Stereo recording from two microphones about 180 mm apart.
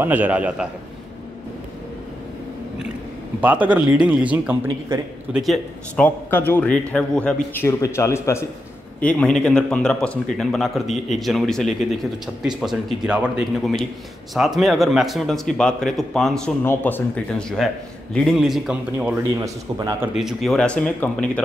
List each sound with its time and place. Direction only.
0.0 s a man's voice: 10° right (ahead or behind)
3.3 s a man's voice: 10° right (ahead or behind)
4.6 s a man's voice: 20° right (ahead or behind)
5.3 s a man's voice: centre (ahead or behind); by 20.1 s 15° right (ahead or behind)
20.2 s a man's voice: centre (ahead or behind)